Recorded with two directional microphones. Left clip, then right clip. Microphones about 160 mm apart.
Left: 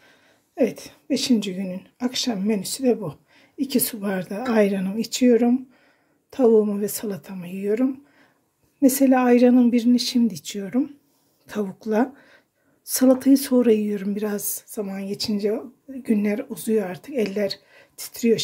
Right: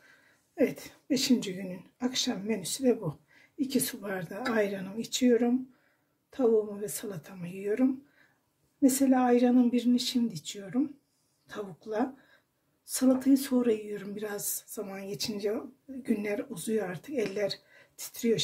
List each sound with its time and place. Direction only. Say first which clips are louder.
0.6 s speech: left 6 dB; 30° left (ahead or behind)
8.8 s speech: left 7 dB; 40° left (ahead or behind)